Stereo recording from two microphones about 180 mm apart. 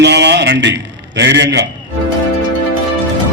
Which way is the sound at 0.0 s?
70° right (ahead or behind).